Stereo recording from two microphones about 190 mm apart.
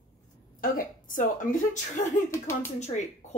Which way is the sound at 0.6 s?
45° left (ahead or behind).